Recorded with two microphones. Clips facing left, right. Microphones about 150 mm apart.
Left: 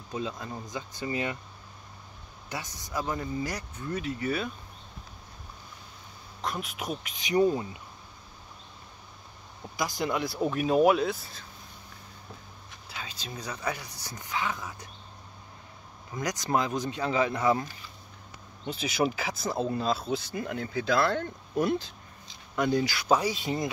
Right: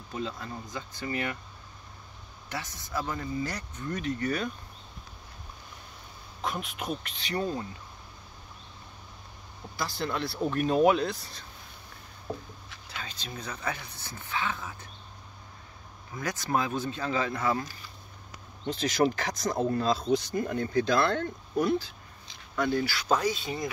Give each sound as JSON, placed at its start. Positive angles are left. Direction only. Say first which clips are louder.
{"t": 0.1, "sound": "speech", "louder": "left 1 dB", "side_deg": 15}
{"t": 2.5, "sound": "speech", "louder": "even", "side_deg": 15}
{"t": 6.4, "sound": "speech", "louder": "even", "side_deg": 0}
{"t": 9.8, "sound": "speech", "louder": "left 2 dB", "side_deg": 15}
{"t": 12.9, "sound": "speech", "louder": "even", "side_deg": 10}
{"t": 16.2, "sound": "speech", "louder": "left 1 dB", "side_deg": 15}
{"t": 18.7, "sound": "speech", "louder": "right 2 dB", "side_deg": 10}